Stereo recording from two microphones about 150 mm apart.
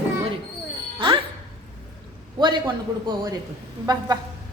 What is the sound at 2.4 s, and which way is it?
A woman's voice, 30° right (ahead or behind).